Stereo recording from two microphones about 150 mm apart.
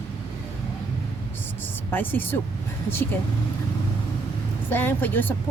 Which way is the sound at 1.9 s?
15° left (ahead or behind).